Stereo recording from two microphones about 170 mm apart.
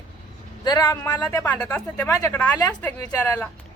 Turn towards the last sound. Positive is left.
turn(degrees=10)  # may be behind; listen again after turning